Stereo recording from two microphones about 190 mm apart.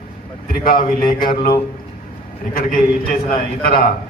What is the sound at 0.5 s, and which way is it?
A man's voice, 50° left (ahead or behind).